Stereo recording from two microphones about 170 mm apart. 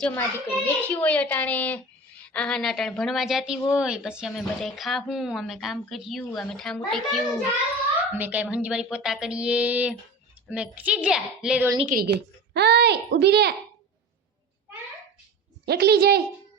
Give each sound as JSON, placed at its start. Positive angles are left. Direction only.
{"t": 0.0, "sound": "a child's voice", "side_deg": 10}
{"t": 11.9, "sound": "a woman's voice", "side_deg": -60}
{"t": 12.5, "sound": "speech", "side_deg": -75}
{"t": 15.6, "sound": "speech", "side_deg": -70}